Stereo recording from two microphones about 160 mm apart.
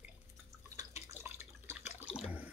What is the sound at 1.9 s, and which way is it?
Water, 5° right (ahead or behind).